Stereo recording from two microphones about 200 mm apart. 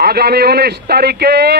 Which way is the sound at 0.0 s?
50° right (ahead or behind).